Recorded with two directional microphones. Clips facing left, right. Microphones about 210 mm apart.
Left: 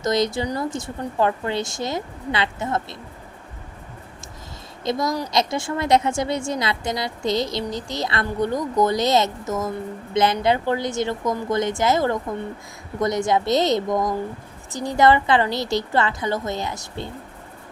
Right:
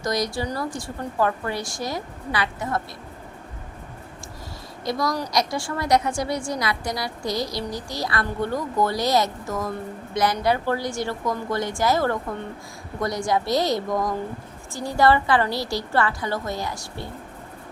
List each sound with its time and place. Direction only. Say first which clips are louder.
0.0 s a woman's voice: left 4 dB; 25° left (ahead or behind)
4.9 s a woman's voice: left 2 dB; 20° left (ahead or behind)